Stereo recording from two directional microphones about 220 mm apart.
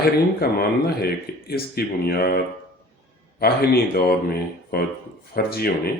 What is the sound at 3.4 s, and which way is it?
Speech, 45° left (ahead or behind).